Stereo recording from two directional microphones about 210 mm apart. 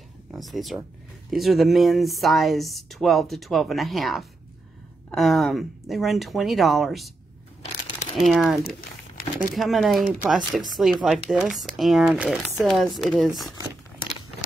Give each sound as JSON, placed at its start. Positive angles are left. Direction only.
{"t": 0.3, "sound": "speech", "side_deg": 0}
{"t": 8.2, "sound": "speech", "side_deg": 0}
{"t": 8.6, "sound": "crumpling", "side_deg": 45}
{"t": 9.6, "sound": "speech", "side_deg": 0}